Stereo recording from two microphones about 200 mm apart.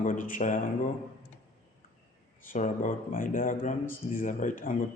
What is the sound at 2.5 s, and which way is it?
Speech, 40° left (ahead or behind).